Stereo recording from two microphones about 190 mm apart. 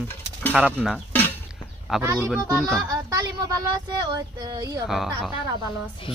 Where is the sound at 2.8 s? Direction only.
20° right (ahead or behind).